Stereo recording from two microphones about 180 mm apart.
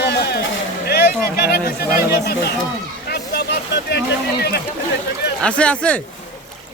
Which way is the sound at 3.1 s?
60° left (ahead or behind).